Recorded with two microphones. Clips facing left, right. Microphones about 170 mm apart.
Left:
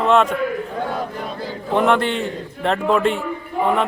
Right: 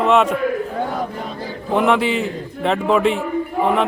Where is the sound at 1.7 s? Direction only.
Centre (ahead or behind).